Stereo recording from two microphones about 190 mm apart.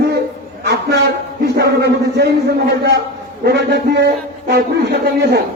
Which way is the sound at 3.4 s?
60° right (ahead or behind).